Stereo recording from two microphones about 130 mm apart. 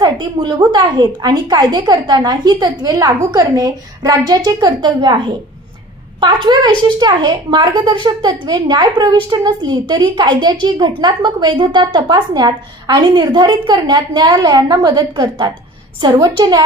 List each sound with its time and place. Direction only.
0.0 s a woman's voice: 35° right (ahead or behind)